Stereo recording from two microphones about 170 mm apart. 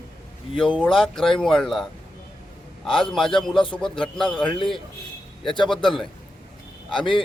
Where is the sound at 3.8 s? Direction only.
5° left (ahead or behind).